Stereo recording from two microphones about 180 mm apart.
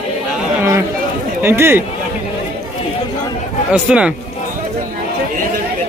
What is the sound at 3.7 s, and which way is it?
Speech, 5° right (ahead or behind).